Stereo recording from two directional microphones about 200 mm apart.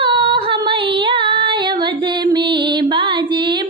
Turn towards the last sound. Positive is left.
turn(degrees=-25)  # may be behind; listen again after turning